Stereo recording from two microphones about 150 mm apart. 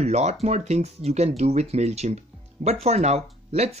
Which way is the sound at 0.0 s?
45° right (ahead or behind).